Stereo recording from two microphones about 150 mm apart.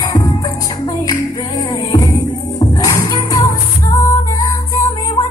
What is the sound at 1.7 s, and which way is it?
Music, 25° left (ahead or behind).